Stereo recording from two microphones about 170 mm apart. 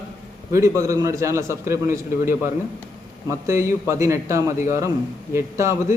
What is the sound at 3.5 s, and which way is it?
A man's voice, 15° right (ahead or behind).